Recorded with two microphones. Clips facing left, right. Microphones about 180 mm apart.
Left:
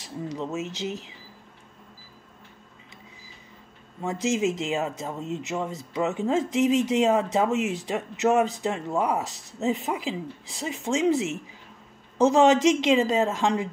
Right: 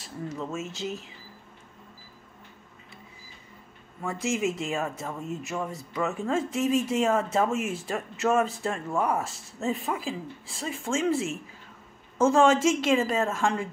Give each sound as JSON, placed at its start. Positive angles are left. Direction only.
{"t": 0.0, "sound": "speech", "side_deg": 15}
{"t": 4.0, "sound": "speech", "side_deg": 20}